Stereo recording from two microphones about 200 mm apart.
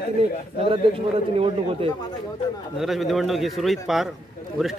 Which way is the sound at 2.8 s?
Centre (ahead or behind).